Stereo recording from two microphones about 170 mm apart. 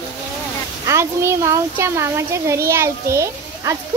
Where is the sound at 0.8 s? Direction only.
15° right (ahead or behind).